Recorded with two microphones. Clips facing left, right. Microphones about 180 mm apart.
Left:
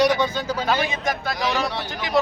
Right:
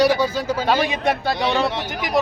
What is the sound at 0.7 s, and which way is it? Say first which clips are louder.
Speech: right 5 dB; 30° right (ahead or behind).